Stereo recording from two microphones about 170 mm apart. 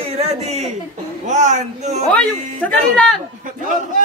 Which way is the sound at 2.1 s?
5° left (ahead or behind).